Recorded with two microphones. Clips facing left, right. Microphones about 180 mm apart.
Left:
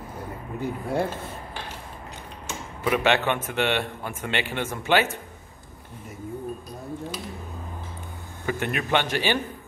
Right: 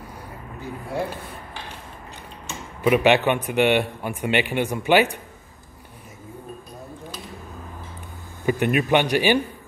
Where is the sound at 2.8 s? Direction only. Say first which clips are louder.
Right 5 dB; 15° right (ahead or behind).